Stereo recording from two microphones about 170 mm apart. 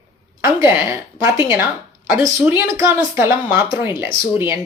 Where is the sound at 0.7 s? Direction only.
15° right (ahead or behind).